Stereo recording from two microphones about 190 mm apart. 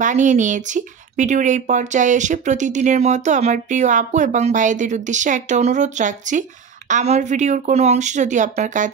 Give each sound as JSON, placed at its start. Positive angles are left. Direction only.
{"t": 0.0, "sound": "speech", "side_deg": -40}